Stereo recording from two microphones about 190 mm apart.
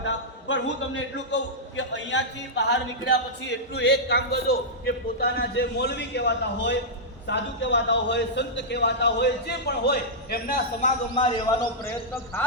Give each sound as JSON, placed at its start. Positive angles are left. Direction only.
{"t": 0.0, "sound": "a man's voice", "side_deg": 85}
{"t": 3.8, "sound": "a man's voice", "side_deg": 60}
{"t": 11.1, "sound": "a man's voice", "side_deg": 25}